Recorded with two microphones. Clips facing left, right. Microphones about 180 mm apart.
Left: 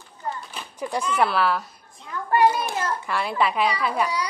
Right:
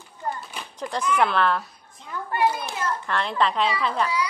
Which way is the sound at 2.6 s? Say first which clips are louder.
Left 2 dB; 10° left (ahead or behind).